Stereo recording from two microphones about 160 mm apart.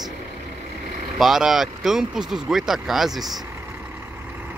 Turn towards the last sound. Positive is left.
turn(degrees=0)  # may be behind; listen again after turning